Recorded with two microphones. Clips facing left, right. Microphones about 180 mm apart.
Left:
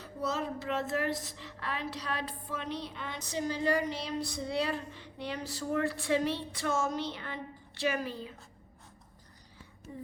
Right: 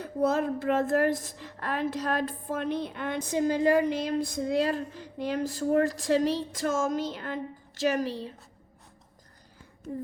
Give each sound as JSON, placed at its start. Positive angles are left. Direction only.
{"t": 0.0, "sound": "a woman's voice", "side_deg": -55}